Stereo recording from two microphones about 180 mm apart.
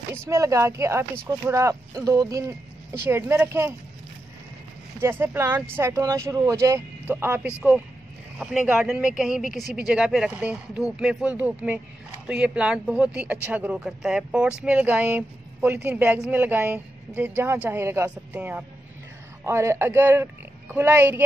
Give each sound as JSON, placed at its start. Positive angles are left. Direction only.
{"t": 0.3, "sound": "speech", "side_deg": -15}
{"t": 5.0, "sound": "speech", "side_deg": -10}